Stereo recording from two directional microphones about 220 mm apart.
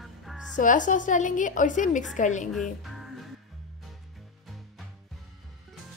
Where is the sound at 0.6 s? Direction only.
35° left (ahead or behind).